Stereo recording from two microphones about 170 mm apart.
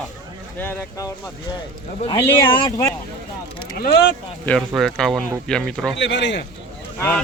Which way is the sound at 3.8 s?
75° left (ahead or behind).